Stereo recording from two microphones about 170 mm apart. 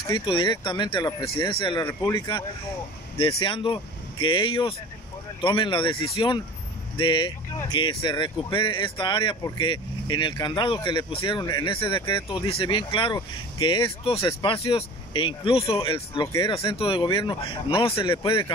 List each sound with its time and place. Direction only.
0.0 s speech: 30° left (ahead or behind)
1.9 s speech: 15° left (ahead or behind); by 16.3 s 30° left (ahead or behind)
16.3 s speech: 20° left (ahead or behind)
16.5 s speech: 35° left (ahead or behind)